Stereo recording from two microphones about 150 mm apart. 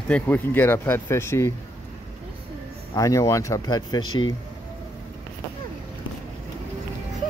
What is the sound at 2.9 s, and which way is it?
Speech, 20° left (ahead or behind).